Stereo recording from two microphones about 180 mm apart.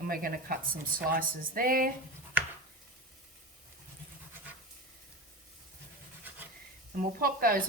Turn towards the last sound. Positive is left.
turn(degrees=-55)  # may be behind; listen again after turning